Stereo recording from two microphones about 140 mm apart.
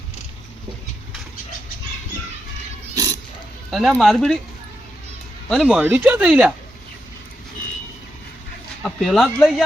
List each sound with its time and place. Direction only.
2.9 s a sound: 25° right (ahead or behind)
3.7 s speech: centre (ahead or behind)
5.6 s speech: 10° right (ahead or behind)
8.8 s speech: centre (ahead or behind)